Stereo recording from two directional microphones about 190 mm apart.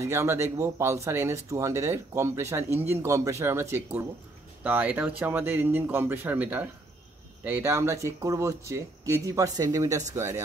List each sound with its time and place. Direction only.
0.0 s speech: 15° right (ahead or behind)